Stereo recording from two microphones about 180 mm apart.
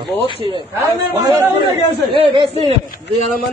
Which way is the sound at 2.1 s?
30° right (ahead or behind).